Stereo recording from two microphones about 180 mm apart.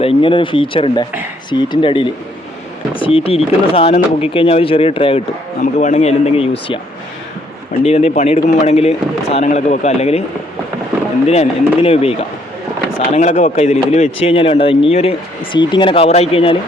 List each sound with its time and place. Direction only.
0.0 s speech: 30° left (ahead or behind)
7.9 s speech: 35° left (ahead or behind)
11.3 s speech: 35° left (ahead or behind)